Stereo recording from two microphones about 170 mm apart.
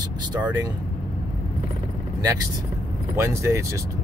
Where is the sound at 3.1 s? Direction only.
15° right (ahead or behind).